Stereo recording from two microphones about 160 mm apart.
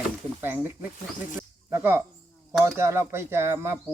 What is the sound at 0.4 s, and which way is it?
Speech, 10° right (ahead or behind).